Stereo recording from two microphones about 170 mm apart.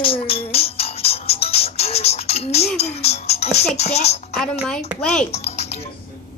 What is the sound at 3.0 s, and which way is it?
Speech, 40° left (ahead or behind).